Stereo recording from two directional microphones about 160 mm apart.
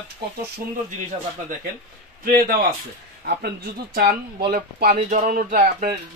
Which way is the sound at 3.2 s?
80° right.